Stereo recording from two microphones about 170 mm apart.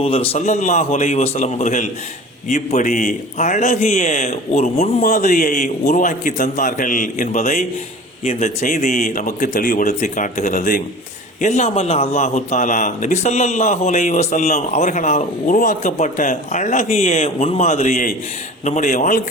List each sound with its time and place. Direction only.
0.0 s a man's voice: 35° left (ahead or behind); by 19.2 s 50° left (ahead or behind)